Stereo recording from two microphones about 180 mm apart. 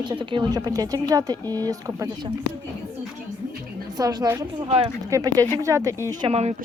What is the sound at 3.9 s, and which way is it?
Speech, 20° right (ahead or behind).